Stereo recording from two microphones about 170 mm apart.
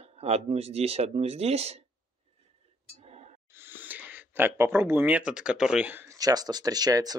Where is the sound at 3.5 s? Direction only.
10° right (ahead or behind).